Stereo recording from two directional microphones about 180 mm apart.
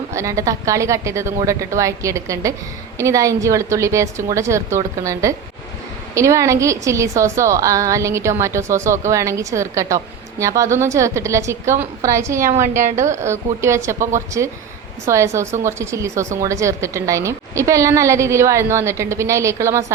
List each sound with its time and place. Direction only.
0.1 s a woman's voice: 15° right (ahead or behind)